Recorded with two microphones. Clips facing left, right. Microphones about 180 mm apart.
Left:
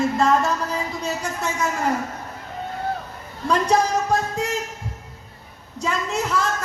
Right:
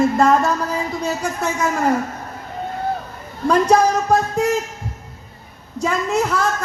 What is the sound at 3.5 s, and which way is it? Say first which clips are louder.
Speech: right 5 dB; 60° right (ahead or behind).